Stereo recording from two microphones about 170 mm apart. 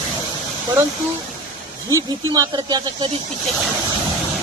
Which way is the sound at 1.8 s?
20° right (ahead or behind).